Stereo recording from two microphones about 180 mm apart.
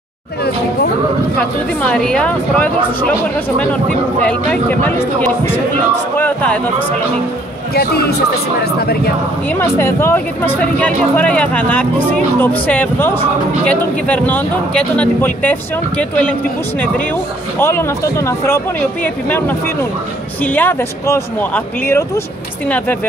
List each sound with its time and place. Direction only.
1.4 s a woman's voice: 5° left (ahead or behind)
7.7 s speech: 60° left (ahead or behind)
9.5 s speech: 15° left (ahead or behind)
17.6 s speech: 15° left (ahead or behind)